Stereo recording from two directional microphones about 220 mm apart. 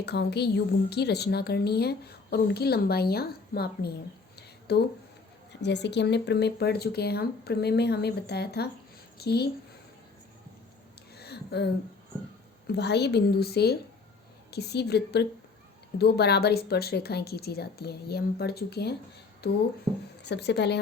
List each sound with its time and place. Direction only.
0.0 s a woman's voice: 50° left (ahead or behind)
11.2 s a sound: 45° left (ahead or behind)
12.6 s a woman's voice: 50° left (ahead or behind)